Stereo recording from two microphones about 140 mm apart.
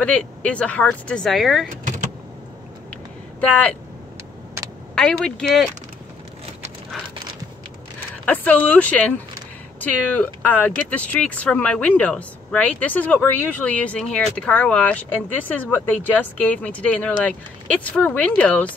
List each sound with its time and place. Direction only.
0.0 s speech: 10° left (ahead or behind)
3.3 s speech: 10° left (ahead or behind)
4.6 s a sound: 20° right (ahead or behind)
4.9 s speech: 5° left (ahead or behind)
8.3 s speech: 10° left (ahead or behind)